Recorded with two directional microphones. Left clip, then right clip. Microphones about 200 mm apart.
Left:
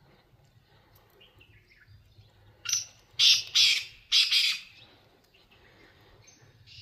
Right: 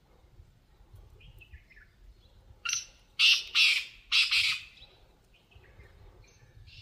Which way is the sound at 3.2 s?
Centre (ahead or behind).